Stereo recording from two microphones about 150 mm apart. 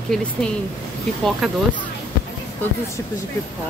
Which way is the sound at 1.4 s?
Centre (ahead or behind).